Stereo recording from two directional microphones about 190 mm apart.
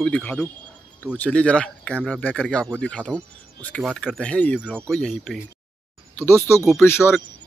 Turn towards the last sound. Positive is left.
turn(degrees=15)  # may be behind; listen again after turning